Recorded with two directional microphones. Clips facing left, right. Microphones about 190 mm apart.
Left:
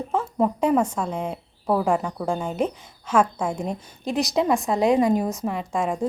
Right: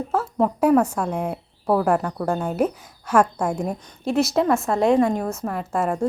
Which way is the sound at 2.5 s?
5° right (ahead or behind).